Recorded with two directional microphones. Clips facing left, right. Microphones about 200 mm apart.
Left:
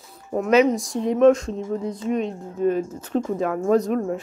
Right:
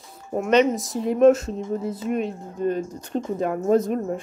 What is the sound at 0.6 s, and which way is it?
Speech, centre (ahead or behind).